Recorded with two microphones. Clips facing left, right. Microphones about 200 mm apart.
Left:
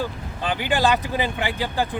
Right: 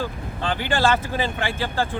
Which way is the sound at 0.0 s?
15° left (ahead or behind).